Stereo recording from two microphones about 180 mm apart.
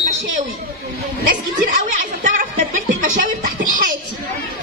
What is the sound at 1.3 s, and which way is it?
Chuckle, 45° right (ahead or behind).